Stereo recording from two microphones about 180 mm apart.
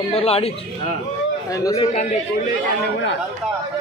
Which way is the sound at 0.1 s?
35° left (ahead or behind).